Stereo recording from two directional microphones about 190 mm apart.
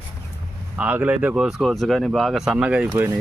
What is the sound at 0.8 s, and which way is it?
Speech, 10° right (ahead or behind).